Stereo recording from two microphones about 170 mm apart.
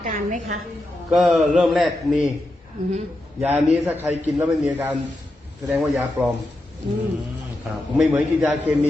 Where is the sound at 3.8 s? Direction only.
10° right (ahead or behind).